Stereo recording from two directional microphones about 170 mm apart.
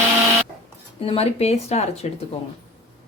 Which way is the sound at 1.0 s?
35° left (ahead or behind).